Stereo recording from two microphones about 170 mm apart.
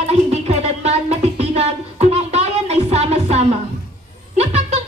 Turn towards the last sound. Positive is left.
turn(degrees=-40)  # may be behind; listen again after turning